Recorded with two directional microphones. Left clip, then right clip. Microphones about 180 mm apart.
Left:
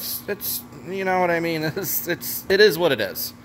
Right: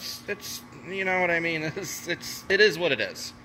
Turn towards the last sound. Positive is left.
turn(degrees=30)  # may be behind; listen again after turning